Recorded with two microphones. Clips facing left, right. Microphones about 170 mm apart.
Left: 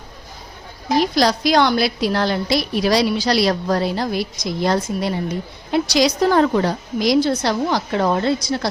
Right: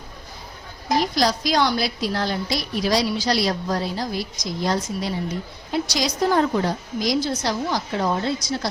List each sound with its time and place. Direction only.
1.1 s a woman's voice: 70° left (ahead or behind)